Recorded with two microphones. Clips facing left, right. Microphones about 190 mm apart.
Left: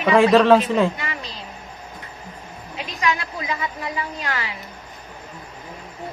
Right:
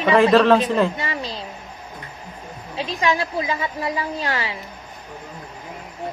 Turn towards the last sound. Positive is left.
turn(degrees=-30)  # may be behind; listen again after turning